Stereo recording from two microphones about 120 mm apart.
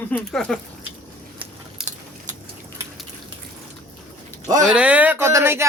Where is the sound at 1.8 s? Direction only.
5° right (ahead or behind).